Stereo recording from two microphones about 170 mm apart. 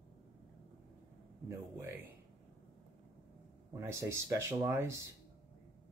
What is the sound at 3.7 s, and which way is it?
Speech, 15° right (ahead or behind).